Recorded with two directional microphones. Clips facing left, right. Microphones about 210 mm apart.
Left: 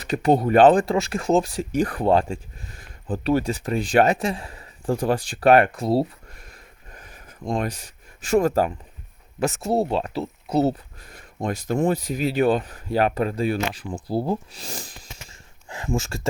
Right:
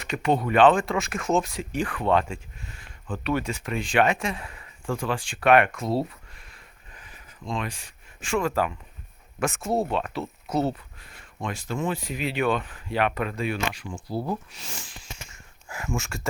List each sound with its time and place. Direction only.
0.0 s speech: 35° left (ahead or behind)